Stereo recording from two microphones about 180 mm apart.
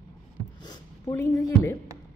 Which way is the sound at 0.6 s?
25° left (ahead or behind).